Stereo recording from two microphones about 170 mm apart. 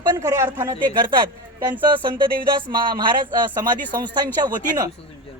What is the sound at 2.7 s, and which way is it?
A woman's voice, 25° right (ahead or behind).